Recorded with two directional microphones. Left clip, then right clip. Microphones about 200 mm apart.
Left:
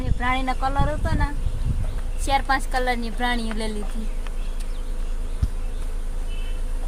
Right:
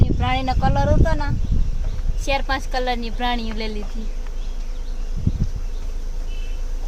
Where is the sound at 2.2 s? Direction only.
15° left (ahead or behind).